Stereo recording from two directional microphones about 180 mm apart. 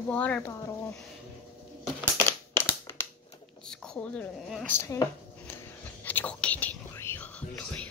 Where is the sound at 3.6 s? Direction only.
5° left (ahead or behind).